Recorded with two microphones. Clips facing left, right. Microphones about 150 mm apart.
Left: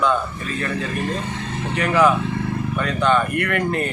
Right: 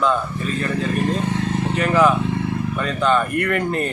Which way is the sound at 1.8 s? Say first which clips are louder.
Even; 5° right (ahead or behind).